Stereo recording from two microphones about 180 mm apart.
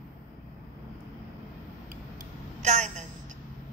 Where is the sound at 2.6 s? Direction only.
40° right (ahead or behind).